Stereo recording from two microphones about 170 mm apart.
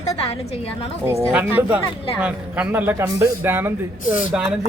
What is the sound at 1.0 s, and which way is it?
A man's voice, 10° right (ahead or behind).